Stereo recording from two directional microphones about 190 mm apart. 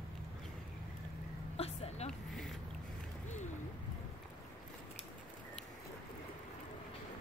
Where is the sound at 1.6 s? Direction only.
35° left (ahead or behind).